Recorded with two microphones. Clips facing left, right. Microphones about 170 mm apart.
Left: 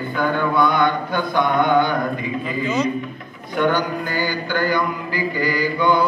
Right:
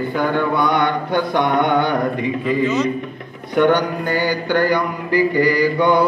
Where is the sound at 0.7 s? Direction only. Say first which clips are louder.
Right 1 dB; 70° right (ahead or behind).